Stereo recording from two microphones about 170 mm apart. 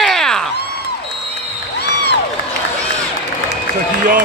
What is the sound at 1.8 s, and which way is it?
Crowd, 80° left.